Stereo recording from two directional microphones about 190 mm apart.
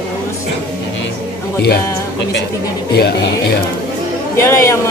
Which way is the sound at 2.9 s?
55° left (ahead or behind).